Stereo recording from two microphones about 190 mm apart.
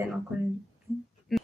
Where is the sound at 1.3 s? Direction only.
Centre (ahead or behind).